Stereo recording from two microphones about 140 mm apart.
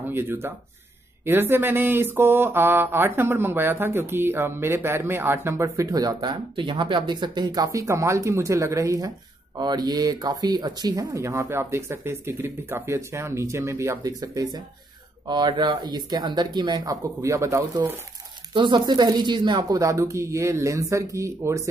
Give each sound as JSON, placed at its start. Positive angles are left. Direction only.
{"t": 0.1, "sound": "speech", "side_deg": -15}
{"t": 18.5, "sound": "speech", "side_deg": -35}